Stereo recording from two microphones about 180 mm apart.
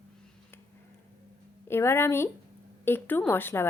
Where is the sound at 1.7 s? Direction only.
15° left (ahead or behind).